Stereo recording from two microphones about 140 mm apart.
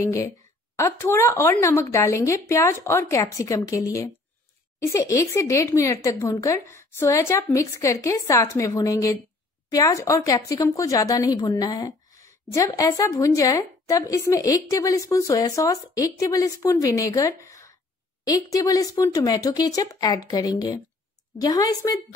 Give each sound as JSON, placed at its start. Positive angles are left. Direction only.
{"t": 0.7, "sound": "a woman's voice", "side_deg": 20}